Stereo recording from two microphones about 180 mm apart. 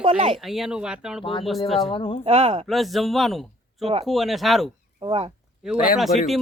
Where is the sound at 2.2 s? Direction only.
35° right (ahead or behind).